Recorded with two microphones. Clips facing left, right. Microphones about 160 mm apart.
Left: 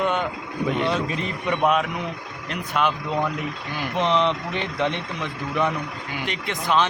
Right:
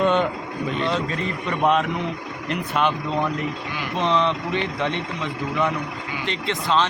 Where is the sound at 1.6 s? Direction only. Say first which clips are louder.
Right 2 dB; centre (ahead or behind).